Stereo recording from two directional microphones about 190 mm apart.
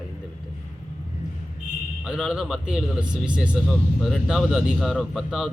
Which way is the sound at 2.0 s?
5° right (ahead or behind).